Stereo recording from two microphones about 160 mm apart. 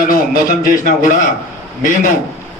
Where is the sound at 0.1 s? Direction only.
65° left (ahead or behind).